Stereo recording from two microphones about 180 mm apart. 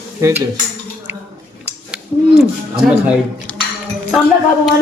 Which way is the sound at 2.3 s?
Centre (ahead or behind).